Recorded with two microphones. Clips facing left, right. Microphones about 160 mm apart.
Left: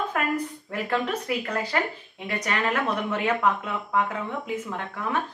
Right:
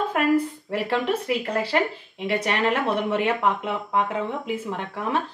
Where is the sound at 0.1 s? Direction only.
30° right (ahead or behind).